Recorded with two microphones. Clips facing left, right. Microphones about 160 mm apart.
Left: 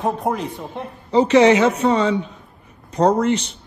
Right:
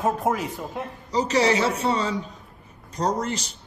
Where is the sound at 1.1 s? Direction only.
40° right (ahead or behind).